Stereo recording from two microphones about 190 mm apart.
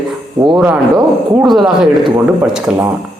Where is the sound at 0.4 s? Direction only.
20° right (ahead or behind).